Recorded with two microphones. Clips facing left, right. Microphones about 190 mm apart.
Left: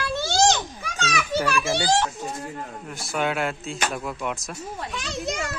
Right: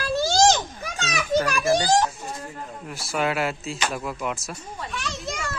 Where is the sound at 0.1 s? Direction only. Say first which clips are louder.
Right 3 dB; 40° right (ahead or behind).